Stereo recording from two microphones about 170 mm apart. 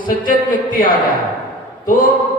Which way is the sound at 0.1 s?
55° left (ahead or behind).